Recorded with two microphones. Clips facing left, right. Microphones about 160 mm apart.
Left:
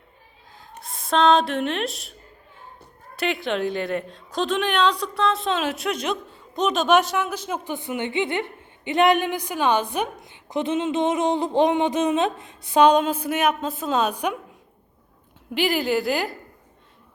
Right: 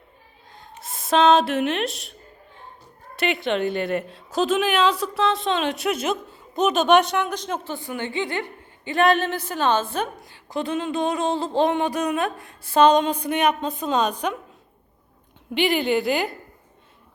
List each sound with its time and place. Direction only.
0.8 s speech: centre (ahead or behind)
3.2 s a woman's voice: centre (ahead or behind)
15.5 s a woman's voice: centre (ahead or behind)